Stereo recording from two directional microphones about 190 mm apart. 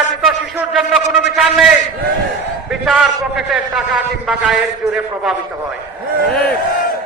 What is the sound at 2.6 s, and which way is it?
A man's voice, 5° right (ahead or behind).